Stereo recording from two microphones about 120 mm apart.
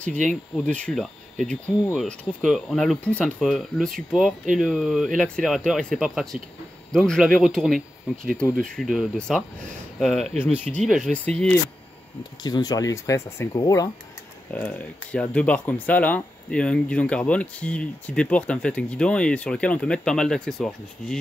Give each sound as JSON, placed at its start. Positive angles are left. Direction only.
{"t": 0.7, "sound": "speech", "side_deg": 10}
{"t": 10.4, "sound": "speech", "side_deg": 15}
{"t": 10.9, "sound": "speech", "side_deg": 0}
{"t": 11.2, "sound": "speech", "side_deg": 10}
{"t": 12.4, "sound": "speech", "side_deg": 35}
{"t": 14.5, "sound": "speech", "side_deg": 15}